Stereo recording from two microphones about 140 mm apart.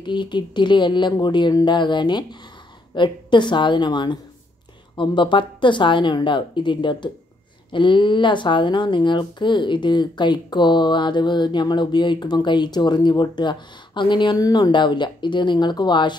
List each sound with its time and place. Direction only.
0.0 s speech: 35° left (ahead or behind)